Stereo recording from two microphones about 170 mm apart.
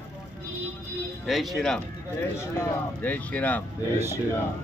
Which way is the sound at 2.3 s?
15° left (ahead or behind).